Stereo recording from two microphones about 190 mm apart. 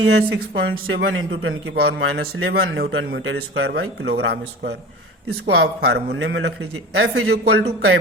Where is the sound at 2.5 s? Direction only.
55° right (ahead or behind).